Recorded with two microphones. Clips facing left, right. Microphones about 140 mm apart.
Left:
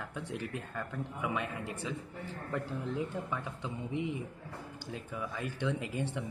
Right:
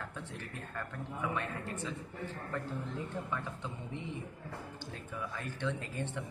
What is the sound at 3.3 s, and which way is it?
Speech, 15° left (ahead or behind).